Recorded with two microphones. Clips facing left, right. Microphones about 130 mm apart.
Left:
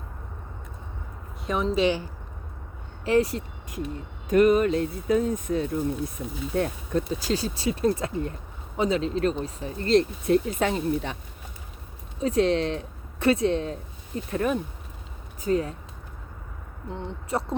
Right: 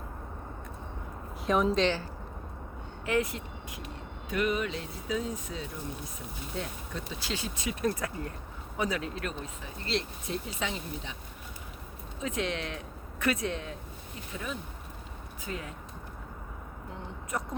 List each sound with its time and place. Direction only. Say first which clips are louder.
1.5 s a woman's voice: even; centre (ahead or behind)
1.8 s speech: left 5 dB; 15° left (ahead or behind)
3.0 s speech: left 7 dB; 30° left (ahead or behind); by 11.2 s 55° left (ahead or behind)
12.2 s speech: left 11 dB; 35° left (ahead or behind)
14.3 s speech: left 13 dB; 55° left (ahead or behind)
15.4 s speech: left 14 dB; 35° left (ahead or behind)
16.9 s speech: left 7 dB; 30° left (ahead or behind)